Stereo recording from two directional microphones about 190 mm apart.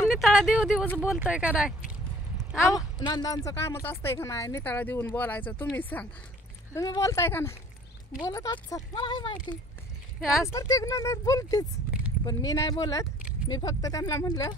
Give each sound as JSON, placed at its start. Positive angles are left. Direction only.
{"t": 0.1, "sound": "speech", "side_deg": 0}
{"t": 3.1, "sound": "speech", "side_deg": 20}
{"t": 10.4, "sound": "speech", "side_deg": 15}